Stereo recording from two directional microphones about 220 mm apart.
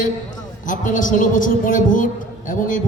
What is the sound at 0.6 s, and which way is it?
Speech, 35° left (ahead or behind).